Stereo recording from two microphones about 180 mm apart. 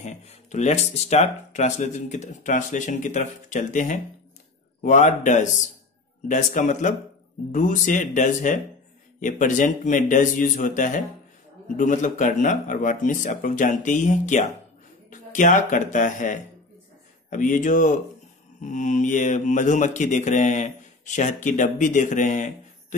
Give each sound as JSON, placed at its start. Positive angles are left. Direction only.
{"t": 0.0, "sound": "speech", "side_deg": 40}
{"t": 4.8, "sound": "mantra", "side_deg": 45}
{"t": 15.0, "sound": "speech", "side_deg": 45}
{"t": 17.3, "sound": "mantra", "side_deg": 45}